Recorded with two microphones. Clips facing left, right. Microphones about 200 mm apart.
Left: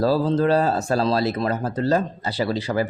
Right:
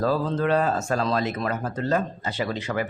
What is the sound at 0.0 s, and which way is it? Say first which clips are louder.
Speech: left 4 dB; 35° left (ahead or behind).